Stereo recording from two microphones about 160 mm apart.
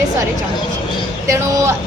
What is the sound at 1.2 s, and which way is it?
Speech, 20° right (ahead or behind).